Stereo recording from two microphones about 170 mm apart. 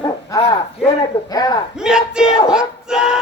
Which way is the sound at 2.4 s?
5° right (ahead or behind).